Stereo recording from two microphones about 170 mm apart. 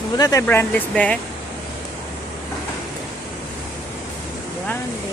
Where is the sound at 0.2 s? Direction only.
20° left (ahead or behind).